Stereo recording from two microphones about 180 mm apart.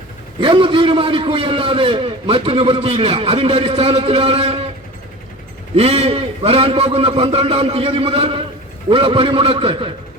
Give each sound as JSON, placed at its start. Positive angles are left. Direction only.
{"t": 0.3, "sound": "a man's voice", "side_deg": -30}
{"t": 5.7, "sound": "a man's voice", "side_deg": -35}